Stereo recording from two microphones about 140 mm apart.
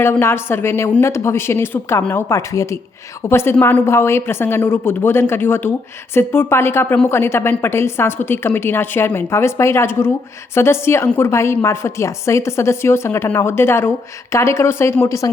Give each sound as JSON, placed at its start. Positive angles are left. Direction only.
{"t": 0.0, "sound": "a woman's voice", "side_deg": 15}